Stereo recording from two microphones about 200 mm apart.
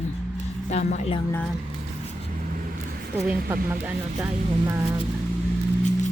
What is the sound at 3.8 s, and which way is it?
Speech, 10° right (ahead or behind).